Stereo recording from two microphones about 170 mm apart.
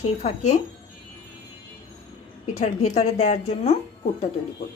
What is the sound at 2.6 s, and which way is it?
Speech, 40° left (ahead or behind).